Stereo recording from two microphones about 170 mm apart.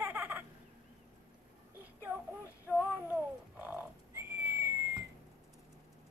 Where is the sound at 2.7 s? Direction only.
10° right (ahead or behind).